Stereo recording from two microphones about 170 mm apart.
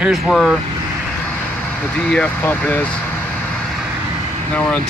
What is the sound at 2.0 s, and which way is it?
Speech, 5° left (ahead or behind).